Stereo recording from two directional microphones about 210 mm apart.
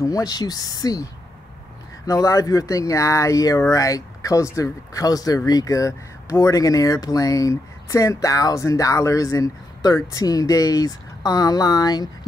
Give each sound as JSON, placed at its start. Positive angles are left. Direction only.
{"t": 0.0, "sound": "speech", "side_deg": 15}
{"t": 2.0, "sound": "speech", "side_deg": 15}